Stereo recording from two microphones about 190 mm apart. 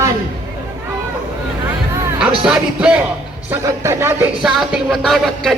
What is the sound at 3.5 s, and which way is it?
Speech, 15° right (ahead or behind).